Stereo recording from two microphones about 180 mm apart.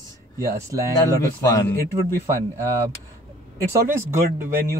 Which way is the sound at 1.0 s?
15° left (ahead or behind).